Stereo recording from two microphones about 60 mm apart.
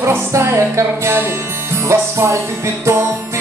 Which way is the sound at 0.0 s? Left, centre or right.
Right.